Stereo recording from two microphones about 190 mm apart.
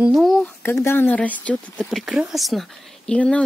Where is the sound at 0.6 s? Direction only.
10° left (ahead or behind).